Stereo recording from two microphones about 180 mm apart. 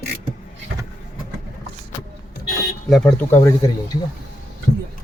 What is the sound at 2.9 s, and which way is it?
Speech, centre (ahead or behind).